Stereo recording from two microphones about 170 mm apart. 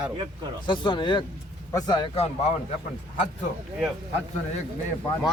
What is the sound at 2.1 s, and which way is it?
Speech, 35° left (ahead or behind).